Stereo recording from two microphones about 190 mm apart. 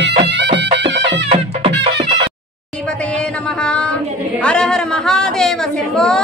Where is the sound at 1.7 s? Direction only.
65° right (ahead or behind).